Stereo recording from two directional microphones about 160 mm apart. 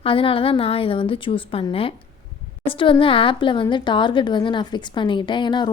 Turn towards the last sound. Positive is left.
turn(degrees=30)  # may be behind; listen again after turning